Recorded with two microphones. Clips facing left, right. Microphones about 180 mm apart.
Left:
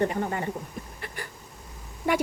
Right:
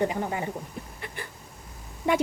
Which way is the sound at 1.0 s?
20° right (ahead or behind).